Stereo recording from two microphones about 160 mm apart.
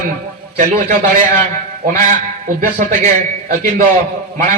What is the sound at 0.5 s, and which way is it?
Speech, 55° right (ahead or behind).